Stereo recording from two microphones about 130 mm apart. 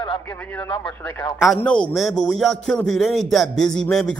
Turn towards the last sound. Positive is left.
turn(degrees=5)  # may be behind; listen again after turning